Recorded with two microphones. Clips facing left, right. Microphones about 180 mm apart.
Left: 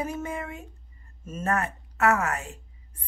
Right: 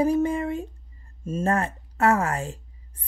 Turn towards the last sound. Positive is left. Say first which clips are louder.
# right 1 dB
turn(degrees=-30)  # may be behind; listen again after turning